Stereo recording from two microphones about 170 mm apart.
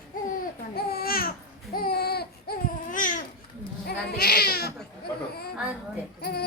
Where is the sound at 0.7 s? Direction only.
65° left (ahead or behind).